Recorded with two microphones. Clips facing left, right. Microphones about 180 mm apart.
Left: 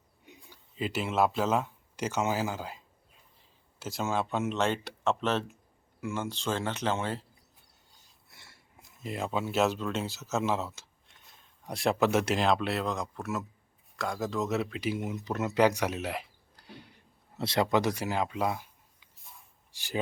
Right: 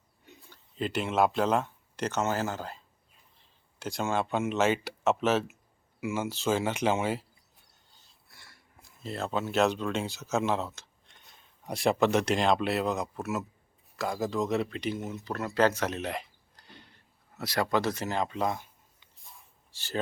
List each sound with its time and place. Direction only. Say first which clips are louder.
0.5 s speech: right 1 dB; 5° left (ahead or behind)
8.3 s a sound: even; 25° left (ahead or behind)
8.7 s speech: even; 15° left (ahead or behind)
17.3 s a man's voice: left 2 dB; 25° left (ahead or behind)